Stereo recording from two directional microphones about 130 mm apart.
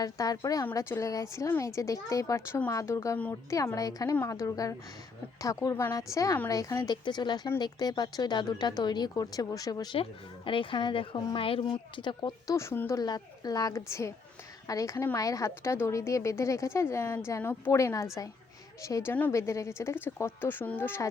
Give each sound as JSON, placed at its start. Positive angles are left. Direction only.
{"t": 0.0, "sound": "a woman's voice", "side_deg": 25}
{"t": 10.0, "sound": "speech", "side_deg": 40}
{"t": 12.5, "sound": "a woman's voice", "side_deg": 20}
{"t": 13.0, "sound": "a woman's voice", "side_deg": 30}